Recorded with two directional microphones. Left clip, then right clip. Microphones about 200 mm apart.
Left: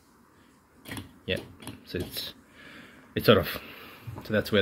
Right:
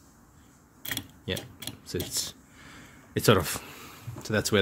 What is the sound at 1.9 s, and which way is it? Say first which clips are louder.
Speech: right 1 dB; 40° right (ahead or behind).